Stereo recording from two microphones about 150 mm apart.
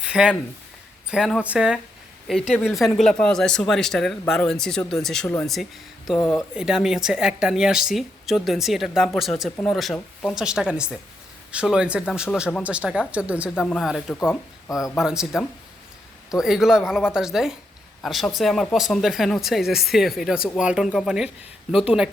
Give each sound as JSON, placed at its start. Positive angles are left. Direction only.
{"t": 0.0, "sound": "speech", "side_deg": -5}
{"t": 14.3, "sound": "speech", "side_deg": 20}
{"t": 14.9, "sound": "speech", "side_deg": -5}